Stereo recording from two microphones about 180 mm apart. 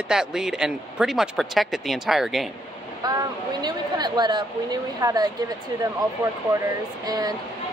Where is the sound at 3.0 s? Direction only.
20° right (ahead or behind).